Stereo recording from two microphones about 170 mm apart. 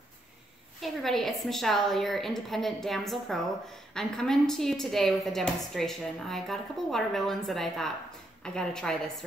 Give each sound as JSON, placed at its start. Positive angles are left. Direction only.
{"t": 0.7, "sound": "a woman's voice", "side_deg": 0}